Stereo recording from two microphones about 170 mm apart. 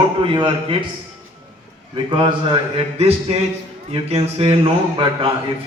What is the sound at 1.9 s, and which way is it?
A man's voice, 30° right (ahead or behind).